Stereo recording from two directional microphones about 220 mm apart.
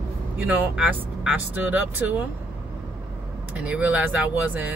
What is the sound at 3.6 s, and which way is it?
Speech, 5° right (ahead or behind).